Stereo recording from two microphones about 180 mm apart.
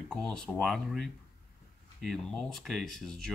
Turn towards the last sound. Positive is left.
turn(degrees=5)  # may be behind; listen again after turning